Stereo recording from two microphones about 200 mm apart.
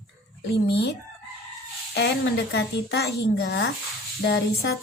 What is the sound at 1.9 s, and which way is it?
Speech, 60° left (ahead or behind).